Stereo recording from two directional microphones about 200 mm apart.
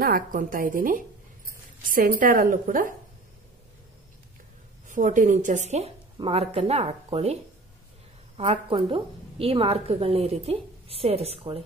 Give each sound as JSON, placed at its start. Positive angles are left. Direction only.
{"t": 0.0, "sound": "a woman's voice", "side_deg": -45}
{"t": 4.8, "sound": "a woman's voice", "side_deg": -40}
{"t": 8.4, "sound": "a woman's voice", "side_deg": -25}